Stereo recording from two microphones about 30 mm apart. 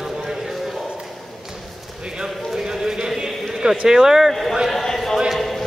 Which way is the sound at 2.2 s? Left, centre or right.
Right.